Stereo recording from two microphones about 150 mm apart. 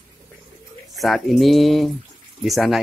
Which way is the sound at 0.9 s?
Centre (ahead or behind).